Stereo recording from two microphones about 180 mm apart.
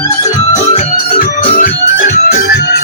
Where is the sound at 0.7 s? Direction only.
45° left (ahead or behind).